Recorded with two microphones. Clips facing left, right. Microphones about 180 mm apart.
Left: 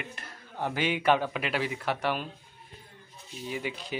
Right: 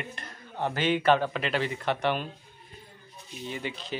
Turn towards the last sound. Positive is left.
turn(degrees=10)  # may be behind; listen again after turning